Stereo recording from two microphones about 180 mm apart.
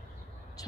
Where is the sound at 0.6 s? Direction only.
20° left (ahead or behind).